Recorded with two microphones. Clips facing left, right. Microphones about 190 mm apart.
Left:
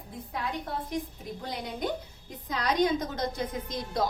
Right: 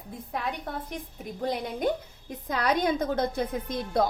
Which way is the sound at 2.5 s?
55° right (ahead or behind).